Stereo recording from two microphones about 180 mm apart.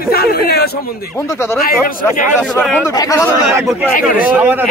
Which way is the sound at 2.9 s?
20° left (ahead or behind).